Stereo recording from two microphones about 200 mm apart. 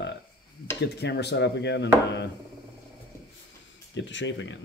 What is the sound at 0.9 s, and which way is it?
Speech, 55° left (ahead or behind).